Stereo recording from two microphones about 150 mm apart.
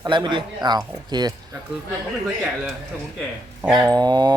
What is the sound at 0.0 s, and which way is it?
A man's voice, 30° right (ahead or behind).